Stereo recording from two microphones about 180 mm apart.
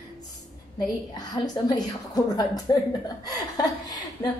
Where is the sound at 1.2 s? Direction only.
20° left (ahead or behind).